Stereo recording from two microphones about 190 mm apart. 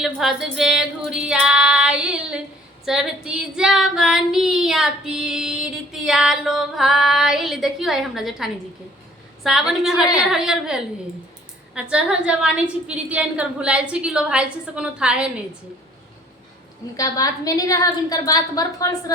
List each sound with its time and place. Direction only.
0.0 s child singing: centre (ahead or behind)
17.0 s a woman's voice: 20° left (ahead or behind)